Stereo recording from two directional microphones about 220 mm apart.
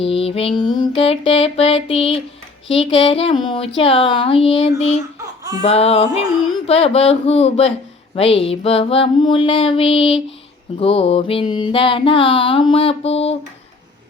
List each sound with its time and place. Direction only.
0.0 s speech: 25° left (ahead or behind)